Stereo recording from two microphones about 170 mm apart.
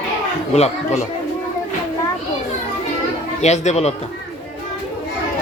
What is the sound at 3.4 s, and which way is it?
Speech, 40° left (ahead or behind).